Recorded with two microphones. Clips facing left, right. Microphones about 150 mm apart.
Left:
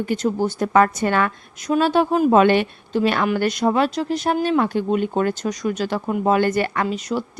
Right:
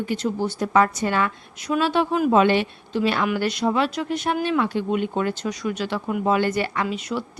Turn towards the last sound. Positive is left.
turn(degrees=40)  # may be behind; listen again after turning